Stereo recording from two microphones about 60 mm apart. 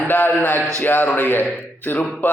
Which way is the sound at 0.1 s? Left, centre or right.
Left.